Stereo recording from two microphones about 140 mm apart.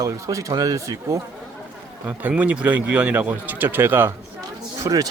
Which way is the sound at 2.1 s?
10° right (ahead or behind).